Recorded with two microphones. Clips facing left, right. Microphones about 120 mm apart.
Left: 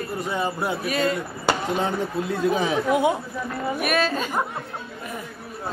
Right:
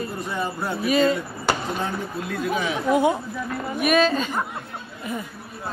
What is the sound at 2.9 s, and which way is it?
A woman's voice, 10° left (ahead or behind).